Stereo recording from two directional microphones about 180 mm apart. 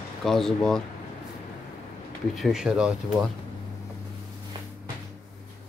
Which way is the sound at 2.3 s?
Centre (ahead or behind).